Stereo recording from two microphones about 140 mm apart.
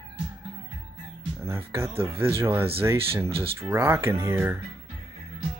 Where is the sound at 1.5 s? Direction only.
20° right (ahead or behind).